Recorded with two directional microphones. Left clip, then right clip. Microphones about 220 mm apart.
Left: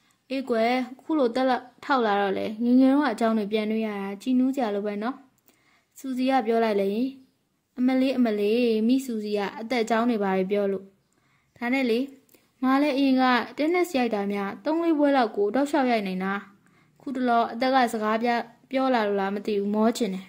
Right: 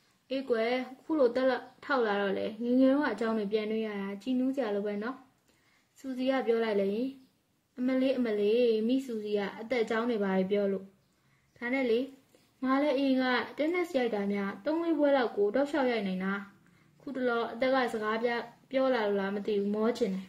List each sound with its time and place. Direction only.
0.3 s speech: 40° left (ahead or behind)